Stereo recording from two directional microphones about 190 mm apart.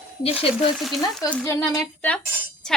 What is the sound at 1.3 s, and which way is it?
Speech, 10° left (ahead or behind).